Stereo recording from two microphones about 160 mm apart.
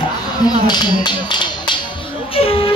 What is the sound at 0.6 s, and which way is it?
Speech, 25° left (ahead or behind).